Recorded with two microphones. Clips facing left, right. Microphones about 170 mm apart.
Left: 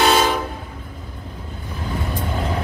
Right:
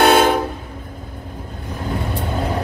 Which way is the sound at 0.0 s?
55° right (ahead or behind).